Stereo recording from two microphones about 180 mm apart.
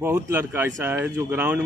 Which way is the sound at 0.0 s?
15° right (ahead or behind).